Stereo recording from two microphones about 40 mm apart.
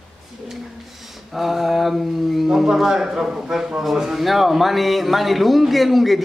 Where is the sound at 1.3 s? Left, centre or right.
Centre.